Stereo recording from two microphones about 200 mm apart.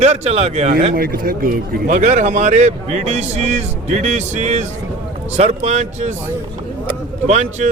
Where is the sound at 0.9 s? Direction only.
45° right (ahead or behind).